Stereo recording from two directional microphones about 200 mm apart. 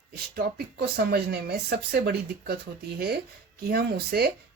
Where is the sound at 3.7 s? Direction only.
55° right (ahead or behind).